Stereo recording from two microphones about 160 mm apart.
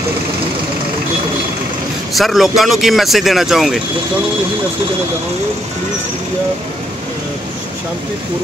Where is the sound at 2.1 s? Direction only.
Centre (ahead or behind).